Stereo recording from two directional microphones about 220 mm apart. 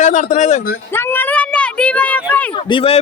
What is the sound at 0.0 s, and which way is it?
Speech, 35° left (ahead or behind).